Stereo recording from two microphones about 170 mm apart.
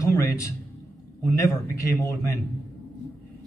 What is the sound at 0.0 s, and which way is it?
Speech, 15° left (ahead or behind).